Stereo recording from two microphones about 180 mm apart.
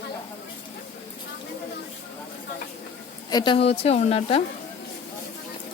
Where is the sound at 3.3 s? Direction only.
25° left (ahead or behind).